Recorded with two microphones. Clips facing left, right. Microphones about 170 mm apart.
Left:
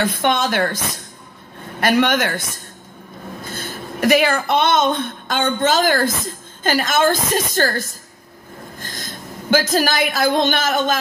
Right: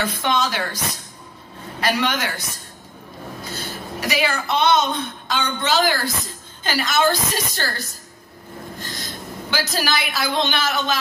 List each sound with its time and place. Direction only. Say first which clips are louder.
0.0 s speech: left 3 dB; 50° left (ahead or behind)
3.4 s a woman's voice: left 1 dB; 50° left (ahead or behind)